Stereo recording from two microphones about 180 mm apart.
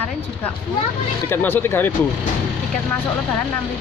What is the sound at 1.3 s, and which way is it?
Speech, 10° left (ahead or behind).